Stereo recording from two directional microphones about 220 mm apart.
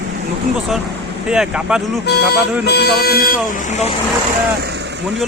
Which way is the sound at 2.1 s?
50° left (ahead or behind).